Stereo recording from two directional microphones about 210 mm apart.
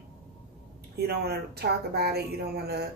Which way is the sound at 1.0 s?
50° right (ahead or behind).